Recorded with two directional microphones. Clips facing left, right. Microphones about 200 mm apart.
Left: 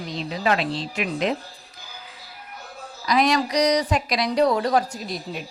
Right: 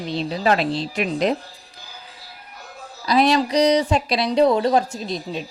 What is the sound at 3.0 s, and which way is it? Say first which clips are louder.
A woman's voice: right 3 dB; 30° right (ahead or behind).